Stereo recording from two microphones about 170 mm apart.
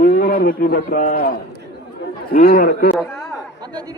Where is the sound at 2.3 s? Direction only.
55° left (ahead or behind).